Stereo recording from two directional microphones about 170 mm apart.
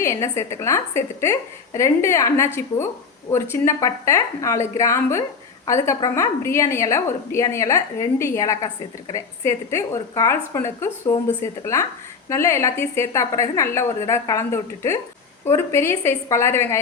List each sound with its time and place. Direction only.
0.0 s a woman's voice: 15° left (ahead or behind)
3.5 s a woman's voice: 15° left (ahead or behind)